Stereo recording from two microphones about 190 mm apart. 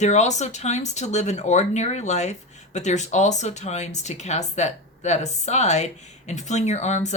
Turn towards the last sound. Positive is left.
turn(degrees=35)  # may be behind; listen again after turning